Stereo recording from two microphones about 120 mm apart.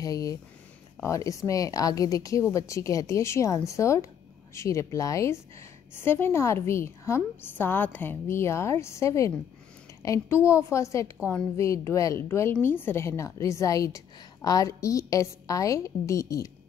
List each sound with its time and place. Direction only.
0.0 s a woman's voice: 30° left (ahead or behind)